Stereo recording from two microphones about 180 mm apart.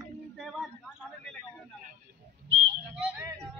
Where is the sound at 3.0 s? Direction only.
10° right (ahead or behind).